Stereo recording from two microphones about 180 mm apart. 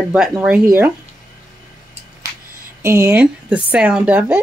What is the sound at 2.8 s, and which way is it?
Speech, 15° right (ahead or behind).